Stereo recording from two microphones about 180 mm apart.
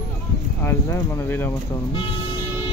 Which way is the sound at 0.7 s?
15° left (ahead or behind).